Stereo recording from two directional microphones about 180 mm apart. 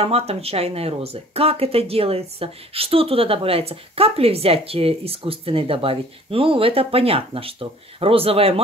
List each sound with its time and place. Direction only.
0.0 s speech: 35° right (ahead or behind)